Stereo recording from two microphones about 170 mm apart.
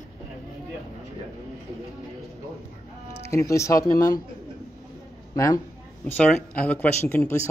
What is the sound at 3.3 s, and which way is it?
Speech, 20° left (ahead or behind).